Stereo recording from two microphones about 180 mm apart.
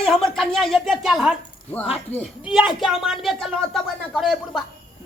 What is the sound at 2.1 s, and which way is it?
Speech, 35° left (ahead or behind).